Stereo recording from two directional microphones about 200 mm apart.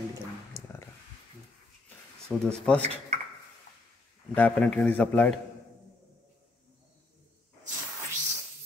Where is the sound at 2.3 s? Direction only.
Centre (ahead or behind).